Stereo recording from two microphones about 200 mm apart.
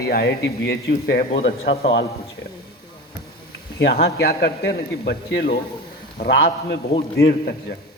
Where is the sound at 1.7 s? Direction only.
60° left (ahead or behind).